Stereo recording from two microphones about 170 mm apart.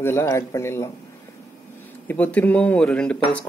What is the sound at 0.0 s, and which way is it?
Speech, 15° left (ahead or behind).